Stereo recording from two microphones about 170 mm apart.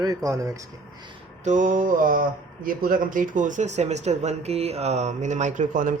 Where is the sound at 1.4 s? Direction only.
50° right (ahead or behind).